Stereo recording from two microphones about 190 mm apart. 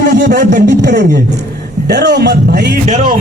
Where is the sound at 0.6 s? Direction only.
65° right (ahead or behind).